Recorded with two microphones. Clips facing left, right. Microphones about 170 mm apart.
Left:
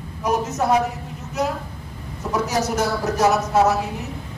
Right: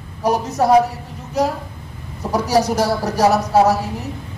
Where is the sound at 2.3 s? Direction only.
35° right (ahead or behind).